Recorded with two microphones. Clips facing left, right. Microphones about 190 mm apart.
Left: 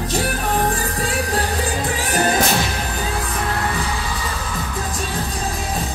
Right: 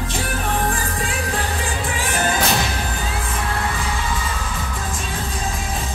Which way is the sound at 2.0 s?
35° left (ahead or behind).